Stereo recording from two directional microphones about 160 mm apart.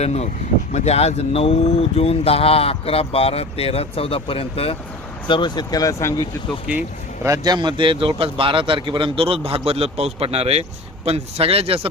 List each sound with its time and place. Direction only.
0.0 s speech: 45° left (ahead or behind); by 6.2 s 20° left (ahead or behind)
6.7 s speech: 5° right (ahead or behind)
7.3 s a man's voice: 25° right (ahead or behind)